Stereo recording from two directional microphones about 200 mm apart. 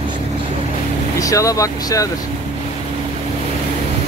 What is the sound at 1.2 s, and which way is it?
Speech, 15° left (ahead or behind).